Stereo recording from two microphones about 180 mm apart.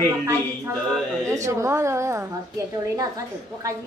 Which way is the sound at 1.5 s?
15° right (ahead or behind).